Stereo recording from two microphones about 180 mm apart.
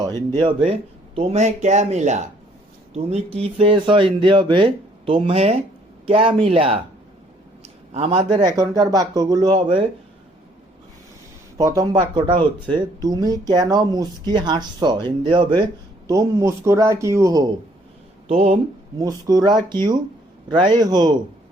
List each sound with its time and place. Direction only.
0.3 s speech: 30° right (ahead or behind)
7.9 s speech: 30° right (ahead or behind)
11.5 s a man's voice: 20° right (ahead or behind)
18.3 s speech: 35° right (ahead or behind)
18.9 s speech: 20° right (ahead or behind)